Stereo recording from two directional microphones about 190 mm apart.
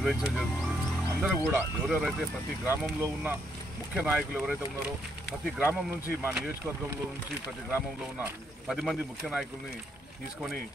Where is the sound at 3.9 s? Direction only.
5° right (ahead or behind).